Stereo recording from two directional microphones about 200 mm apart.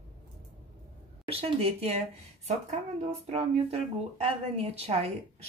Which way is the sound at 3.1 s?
30° right (ahead or behind).